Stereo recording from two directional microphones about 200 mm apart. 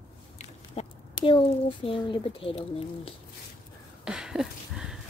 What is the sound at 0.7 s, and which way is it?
Speech, 25° left (ahead or behind).